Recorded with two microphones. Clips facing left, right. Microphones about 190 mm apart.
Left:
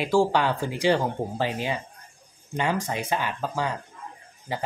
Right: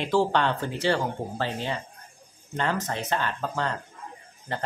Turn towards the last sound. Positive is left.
turn(degrees=10)  # may be behind; listen again after turning